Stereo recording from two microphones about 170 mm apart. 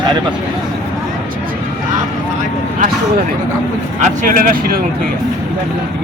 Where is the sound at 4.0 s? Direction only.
50° right (ahead or behind).